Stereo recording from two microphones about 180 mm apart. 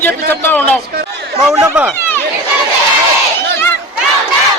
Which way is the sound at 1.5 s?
15° right (ahead or behind).